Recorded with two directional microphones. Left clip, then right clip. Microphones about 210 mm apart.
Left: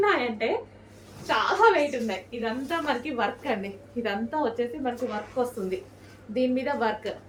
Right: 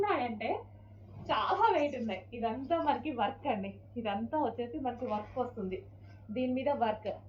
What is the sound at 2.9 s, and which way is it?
A woman's voice, 20° left (ahead or behind).